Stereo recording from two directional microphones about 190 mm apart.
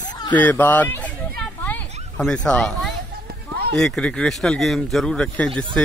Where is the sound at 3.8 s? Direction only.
5° left (ahead or behind).